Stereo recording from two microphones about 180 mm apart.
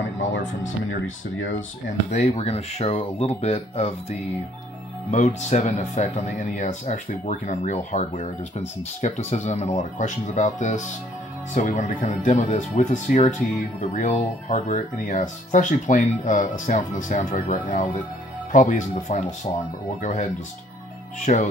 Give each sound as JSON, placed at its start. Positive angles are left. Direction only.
{"t": 0.7, "sound": "speech", "side_deg": 90}
{"t": 2.0, "sound": "speech", "side_deg": 35}
{"t": 21.3, "sound": "speech", "side_deg": 45}